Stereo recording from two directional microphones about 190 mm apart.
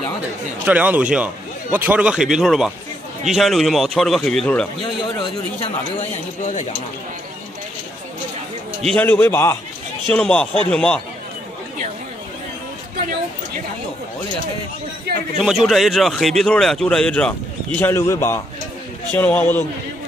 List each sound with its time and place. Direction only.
0.7 s a man's voice: 10° right (ahead or behind)
6.4 s speech: 40° left (ahead or behind)
8.8 s a man's voice: 10° left (ahead or behind)
15.1 s a man's voice: 55° right (ahead or behind)
15.4 s a man's voice: centre (ahead or behind)